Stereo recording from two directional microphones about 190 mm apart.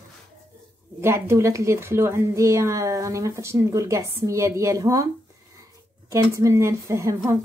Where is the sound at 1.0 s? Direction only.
15° right (ahead or behind).